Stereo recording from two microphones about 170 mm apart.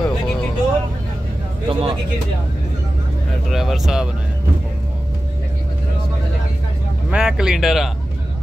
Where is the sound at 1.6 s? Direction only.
30° right (ahead or behind).